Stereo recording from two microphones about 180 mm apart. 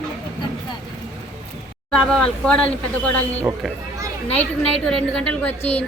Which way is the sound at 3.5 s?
5° right (ahead or behind).